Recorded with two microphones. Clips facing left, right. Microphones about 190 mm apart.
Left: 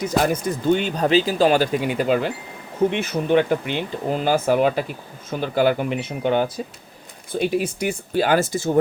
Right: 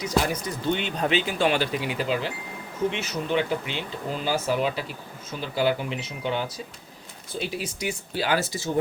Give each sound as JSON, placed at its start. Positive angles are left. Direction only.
{"t": 0.2, "sound": "speech", "side_deg": 50}